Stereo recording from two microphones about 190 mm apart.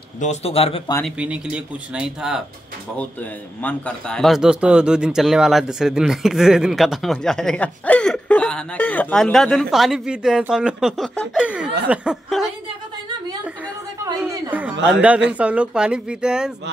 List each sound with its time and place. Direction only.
0.2 s speech: 35° left (ahead or behind)
1.0 s a man's voice: 5° right (ahead or behind)
3.6 s a man's voice: 5° left (ahead or behind)
14.3 s a sound: 15° right (ahead or behind)
14.9 s a man's voice: 5° right (ahead or behind)